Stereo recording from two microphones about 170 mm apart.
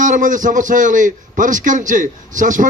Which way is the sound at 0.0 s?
50° right (ahead or behind).